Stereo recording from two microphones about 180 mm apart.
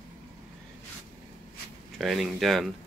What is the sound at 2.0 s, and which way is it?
Speech, centre (ahead or behind).